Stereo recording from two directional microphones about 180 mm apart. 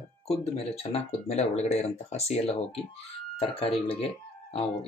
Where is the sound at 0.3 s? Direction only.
35° left (ahead or behind).